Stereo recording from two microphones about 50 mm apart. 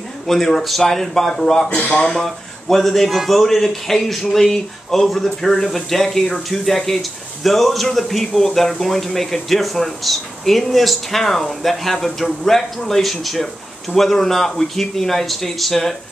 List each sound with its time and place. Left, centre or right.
0.3 s a man's voice: centre
1.7 s speech: left
2.0 s a man's voice: centre